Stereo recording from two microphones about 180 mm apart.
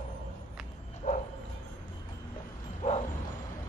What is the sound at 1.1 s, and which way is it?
Bow-wow, 50° left (ahead or behind).